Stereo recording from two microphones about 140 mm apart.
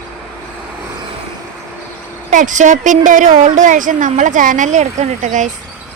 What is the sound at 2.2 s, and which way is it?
A woman's voice, 65° right (ahead or behind).